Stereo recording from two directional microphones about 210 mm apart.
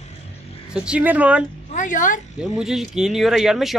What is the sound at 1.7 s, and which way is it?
Speech, 35° left (ahead or behind).